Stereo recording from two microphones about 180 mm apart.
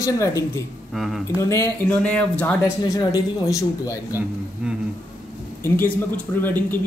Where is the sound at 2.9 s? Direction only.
20° left (ahead or behind).